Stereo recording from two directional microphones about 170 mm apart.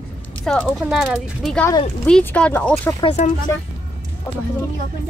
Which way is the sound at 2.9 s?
25° left (ahead or behind).